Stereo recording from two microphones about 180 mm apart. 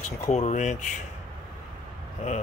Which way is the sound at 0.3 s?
40° left (ahead or behind).